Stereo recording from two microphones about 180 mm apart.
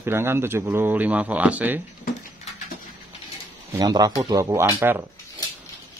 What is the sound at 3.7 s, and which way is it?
Speech, 20° right (ahead or behind).